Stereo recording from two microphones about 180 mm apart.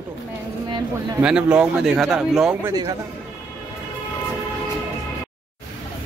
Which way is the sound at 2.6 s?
20° right (ahead or behind).